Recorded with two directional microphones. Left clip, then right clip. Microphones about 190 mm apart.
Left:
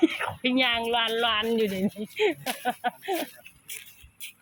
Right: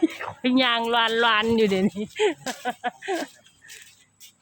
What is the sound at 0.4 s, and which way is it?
Speech, 20° right (ahead or behind).